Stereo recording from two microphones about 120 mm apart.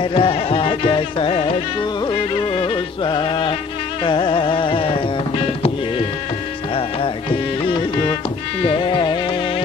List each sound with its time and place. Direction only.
0.0 s music: 50° left (ahead or behind)
2.5 s music: 45° left (ahead or behind)
4.0 s carnatic music: 45° left (ahead or behind)
8.6 s music: 45° left (ahead or behind)